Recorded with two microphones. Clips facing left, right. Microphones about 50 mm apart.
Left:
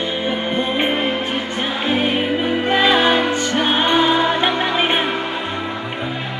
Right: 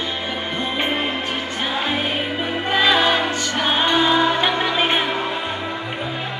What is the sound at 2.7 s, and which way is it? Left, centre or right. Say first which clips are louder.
Music: left 1 dB; centre.